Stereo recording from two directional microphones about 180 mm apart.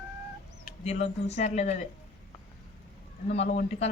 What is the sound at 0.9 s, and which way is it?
Speech, 40° left (ahead or behind).